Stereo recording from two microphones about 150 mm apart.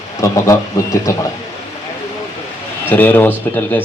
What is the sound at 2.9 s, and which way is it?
Speech, 10° left (ahead or behind).